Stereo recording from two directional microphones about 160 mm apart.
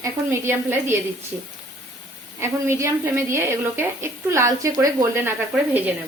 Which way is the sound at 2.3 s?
15° right (ahead or behind).